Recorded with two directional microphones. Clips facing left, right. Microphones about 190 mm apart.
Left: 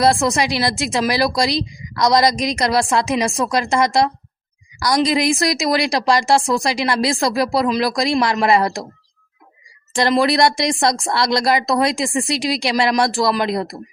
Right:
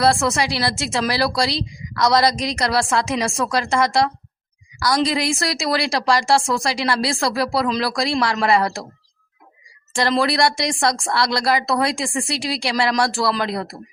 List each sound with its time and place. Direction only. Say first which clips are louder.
0.0 s a woman's voice: left 2 dB; 15° left (ahead or behind)
9.9 s speech: left 3 dB; 20° left (ahead or behind)